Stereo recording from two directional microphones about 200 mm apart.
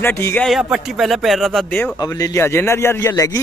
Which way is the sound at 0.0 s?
10° left (ahead or behind).